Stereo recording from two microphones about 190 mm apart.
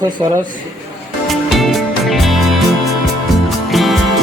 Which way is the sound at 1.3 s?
Centre (ahead or behind).